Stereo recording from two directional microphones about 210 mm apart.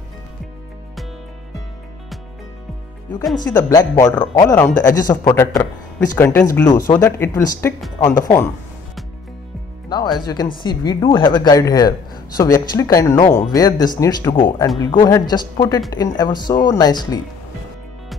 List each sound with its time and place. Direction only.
3.5 s speech: 15° left (ahead or behind)
9.8 s speech: 20° left (ahead or behind)